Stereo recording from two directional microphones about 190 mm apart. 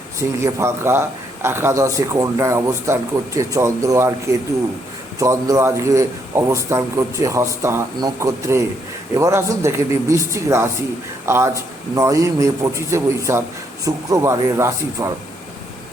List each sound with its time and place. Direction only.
0.2 s a man's voice: 15° right (ahead or behind)
5.2 s a man's voice: 15° right (ahead or behind)